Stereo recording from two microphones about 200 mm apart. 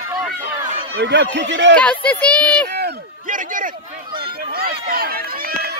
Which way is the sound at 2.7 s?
55° right (ahead or behind).